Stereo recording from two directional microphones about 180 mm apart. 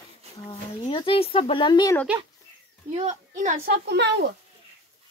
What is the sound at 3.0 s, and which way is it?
A woman's voice, 40° right (ahead or behind).